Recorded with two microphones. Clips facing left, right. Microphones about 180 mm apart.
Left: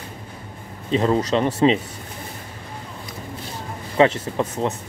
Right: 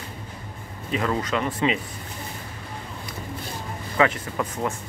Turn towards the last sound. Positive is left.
turn(degrees=25)  # may be behind; listen again after turning